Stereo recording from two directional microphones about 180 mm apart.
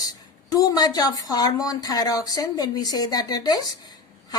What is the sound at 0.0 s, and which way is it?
Speech, 20° left (ahead or behind).